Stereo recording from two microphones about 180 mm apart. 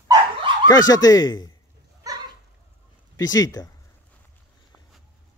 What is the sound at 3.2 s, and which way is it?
Speech, 20° left (ahead or behind).